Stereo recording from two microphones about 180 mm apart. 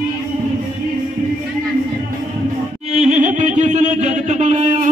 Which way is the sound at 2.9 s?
40° right (ahead or behind).